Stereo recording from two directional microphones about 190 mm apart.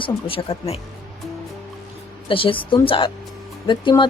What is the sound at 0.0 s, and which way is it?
Speech, 30° left (ahead or behind).